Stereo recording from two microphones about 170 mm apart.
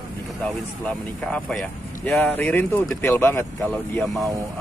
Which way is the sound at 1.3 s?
5° left (ahead or behind).